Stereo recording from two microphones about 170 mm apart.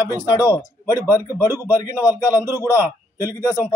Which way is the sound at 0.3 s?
25° left (ahead or behind).